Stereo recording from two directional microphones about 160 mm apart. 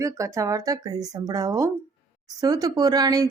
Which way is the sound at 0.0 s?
20° right (ahead or behind).